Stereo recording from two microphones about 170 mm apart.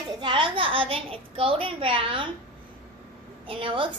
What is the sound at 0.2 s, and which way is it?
A woman's voice, 30° right (ahead or behind).